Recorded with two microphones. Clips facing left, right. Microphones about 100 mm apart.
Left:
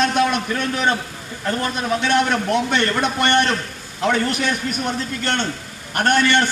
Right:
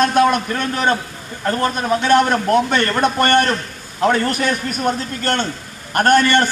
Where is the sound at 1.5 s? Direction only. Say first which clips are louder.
Right 4 dB; 40° right (ahead or behind).